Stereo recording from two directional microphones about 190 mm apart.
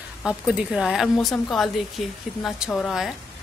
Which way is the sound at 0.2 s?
5° right (ahead or behind).